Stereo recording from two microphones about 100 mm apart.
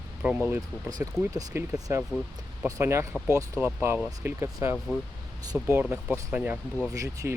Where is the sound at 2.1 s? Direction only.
20° right (ahead or behind).